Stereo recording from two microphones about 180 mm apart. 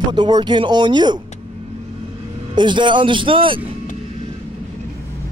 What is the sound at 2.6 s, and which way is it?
A man's voice, 25° right (ahead or behind).